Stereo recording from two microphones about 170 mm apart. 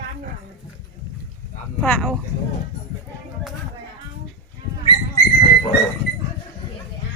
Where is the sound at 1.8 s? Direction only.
10° left (ahead or behind).